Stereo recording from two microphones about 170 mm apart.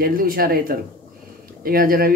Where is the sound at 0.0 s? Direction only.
60° right (ahead or behind).